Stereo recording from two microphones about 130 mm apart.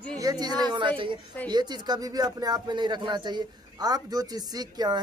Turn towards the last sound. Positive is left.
turn(degrees=-30)  # may be behind; listen again after turning